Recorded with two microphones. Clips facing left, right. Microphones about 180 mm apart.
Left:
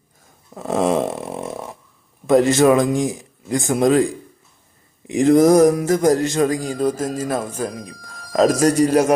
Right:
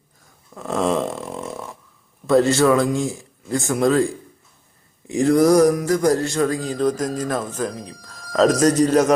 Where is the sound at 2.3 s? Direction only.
15° left (ahead or behind).